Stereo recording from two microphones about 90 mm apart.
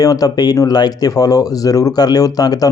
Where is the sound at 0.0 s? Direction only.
45° left (ahead or behind).